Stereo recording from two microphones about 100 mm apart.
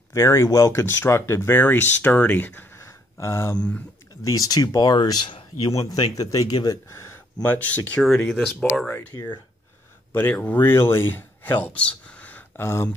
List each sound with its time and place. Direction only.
0.1 s speech: 25° left (ahead or behind)
3.5 s speech: 10° left (ahead or behind)
4.2 s speech: 35° left (ahead or behind)
6.9 s a sound: 25° left (ahead or behind)
7.4 s speech: 15° left (ahead or behind)
8.3 s speech: 5° left (ahead or behind)
9.1 s speech: 40° left (ahead or behind)
10.1 s speech: 15° left (ahead or behind)